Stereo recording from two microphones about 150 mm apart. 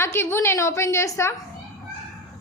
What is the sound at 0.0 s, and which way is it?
A woman's voice, 15° left (ahead or behind).